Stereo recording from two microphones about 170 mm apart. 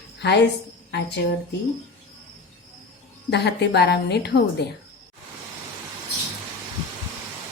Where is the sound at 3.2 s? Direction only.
85° left.